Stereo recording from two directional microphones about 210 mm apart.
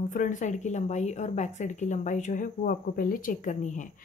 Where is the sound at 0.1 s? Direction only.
40° left (ahead or behind).